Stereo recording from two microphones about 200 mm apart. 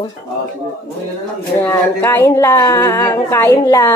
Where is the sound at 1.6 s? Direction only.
10° left (ahead or behind).